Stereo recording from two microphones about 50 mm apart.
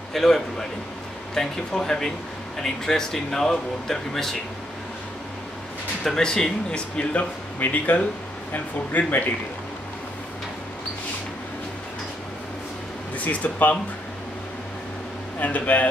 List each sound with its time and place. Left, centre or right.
0.1 s speech: centre
6.0 s speech: centre
7.0 s speech: left
7.5 s speech: left
13.2 s speech: left
15.3 s speech: left